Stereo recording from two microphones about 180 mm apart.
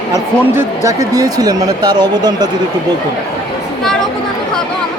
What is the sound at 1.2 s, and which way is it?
Speech, 20° right (ahead or behind).